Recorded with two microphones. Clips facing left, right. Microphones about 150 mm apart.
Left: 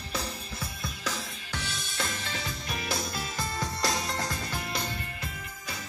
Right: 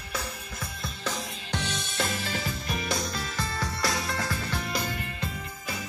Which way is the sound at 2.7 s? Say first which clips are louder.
Right 1 dB; centre (ahead or behind).